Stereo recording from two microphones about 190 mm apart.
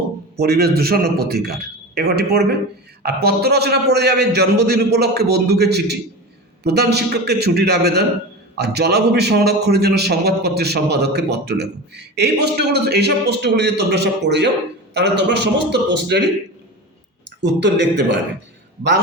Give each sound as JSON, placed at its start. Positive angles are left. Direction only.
{"t": 0.3, "sound": "a man's voice", "side_deg": -55}